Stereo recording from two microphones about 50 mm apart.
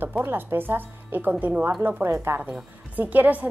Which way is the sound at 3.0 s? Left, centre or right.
Right.